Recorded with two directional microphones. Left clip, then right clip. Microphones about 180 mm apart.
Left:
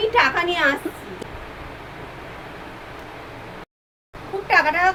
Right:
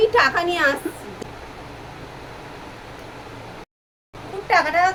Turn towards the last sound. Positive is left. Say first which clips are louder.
# even
turn(degrees=-10)  # may be behind; listen again after turning